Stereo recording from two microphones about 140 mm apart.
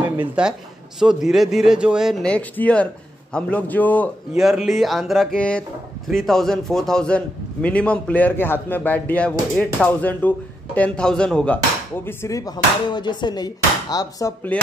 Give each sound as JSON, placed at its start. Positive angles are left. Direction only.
{"t": 0.2, "sound": "a man's voice", "side_deg": -5}
{"t": 2.3, "sound": "a man's voice", "side_deg": 10}
{"t": 4.4, "sound": "a man's voice", "side_deg": 0}
{"t": 12.9, "sound": "speech", "side_deg": 30}
{"t": 14.5, "sound": "speech", "side_deg": 10}